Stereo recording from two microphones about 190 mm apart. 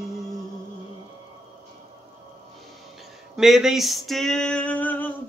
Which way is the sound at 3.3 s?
Centre (ahead or behind).